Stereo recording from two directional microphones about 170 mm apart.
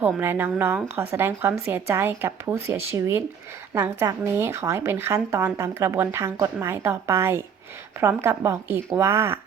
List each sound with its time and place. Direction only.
0.0 s a woman's voice: 10° right (ahead or behind)